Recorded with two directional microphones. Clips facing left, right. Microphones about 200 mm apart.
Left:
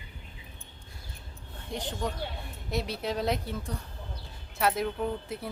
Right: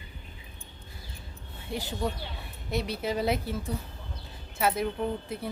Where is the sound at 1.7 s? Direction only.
5° right (ahead or behind).